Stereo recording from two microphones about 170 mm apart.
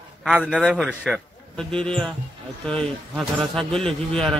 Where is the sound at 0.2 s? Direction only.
5° right (ahead or behind).